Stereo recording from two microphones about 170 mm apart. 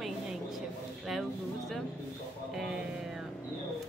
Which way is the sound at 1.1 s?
Centre (ahead or behind).